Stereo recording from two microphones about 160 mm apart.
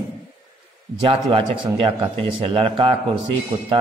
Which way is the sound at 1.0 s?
35° right (ahead or behind).